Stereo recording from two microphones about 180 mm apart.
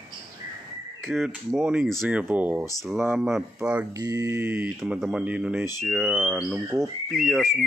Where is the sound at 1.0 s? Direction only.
Centre (ahead or behind).